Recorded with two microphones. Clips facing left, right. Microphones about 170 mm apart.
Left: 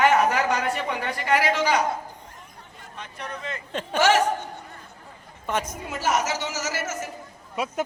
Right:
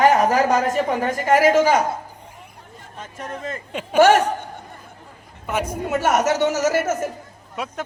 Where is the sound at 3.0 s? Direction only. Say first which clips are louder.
Right 4 dB; 45° right (ahead or behind).